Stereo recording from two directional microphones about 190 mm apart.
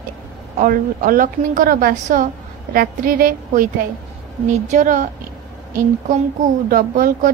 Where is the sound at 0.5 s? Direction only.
45° right (ahead or behind).